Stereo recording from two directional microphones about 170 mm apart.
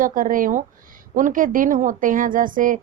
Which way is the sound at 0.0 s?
55° right (ahead or behind).